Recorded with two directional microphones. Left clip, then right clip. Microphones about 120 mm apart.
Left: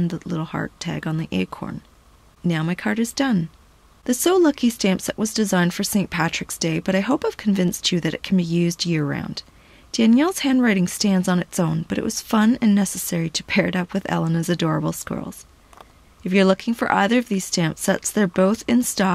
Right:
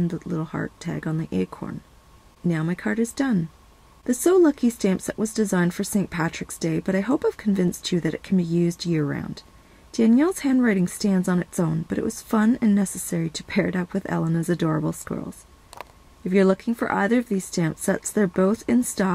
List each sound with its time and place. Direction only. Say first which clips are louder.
0.3 s speech: left 2 dB; 20° left (ahead or behind)
16.3 s speech: left 2 dB; 20° left (ahead or behind)